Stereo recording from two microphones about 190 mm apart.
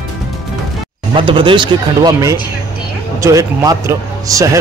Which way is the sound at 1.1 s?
25° right (ahead or behind).